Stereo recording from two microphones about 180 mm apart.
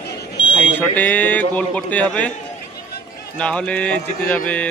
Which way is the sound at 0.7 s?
10° left (ahead or behind).